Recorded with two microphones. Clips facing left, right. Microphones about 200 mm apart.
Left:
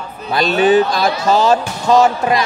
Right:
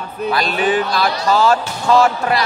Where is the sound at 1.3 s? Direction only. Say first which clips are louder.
Even; 20° left (ahead or behind).